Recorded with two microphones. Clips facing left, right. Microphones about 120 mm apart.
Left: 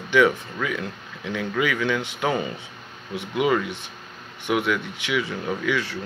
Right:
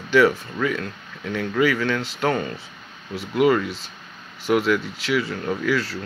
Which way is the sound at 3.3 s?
Centre (ahead or behind).